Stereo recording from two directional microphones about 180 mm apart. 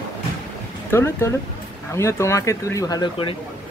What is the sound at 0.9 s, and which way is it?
Speech, 15° left (ahead or behind).